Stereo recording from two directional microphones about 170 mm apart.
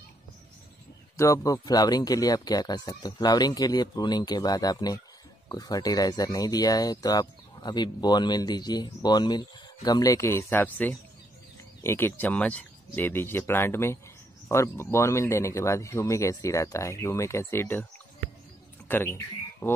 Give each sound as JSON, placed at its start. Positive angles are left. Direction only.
{"t": 1.1, "sound": "speech", "side_deg": 20}
{"t": 18.9, "sound": "speech", "side_deg": 10}